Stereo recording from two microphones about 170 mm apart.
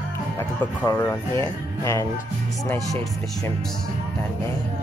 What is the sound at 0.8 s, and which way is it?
Speech, 15° left (ahead or behind).